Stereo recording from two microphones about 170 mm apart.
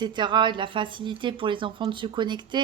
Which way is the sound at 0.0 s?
25° right (ahead or behind).